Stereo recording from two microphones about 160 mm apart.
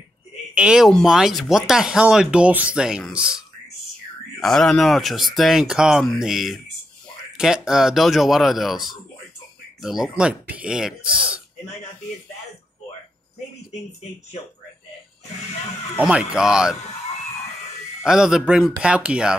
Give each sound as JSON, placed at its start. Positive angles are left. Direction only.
{"t": 0.6, "sound": "speech", "side_deg": -5}
{"t": 11.1, "sound": "speech", "side_deg": -30}
{"t": 16.0, "sound": "speech", "side_deg": -5}
{"t": 18.0, "sound": "speech", "side_deg": -5}